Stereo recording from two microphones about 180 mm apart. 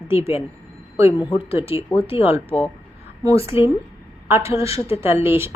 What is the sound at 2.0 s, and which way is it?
Speech, 30° left (ahead or behind).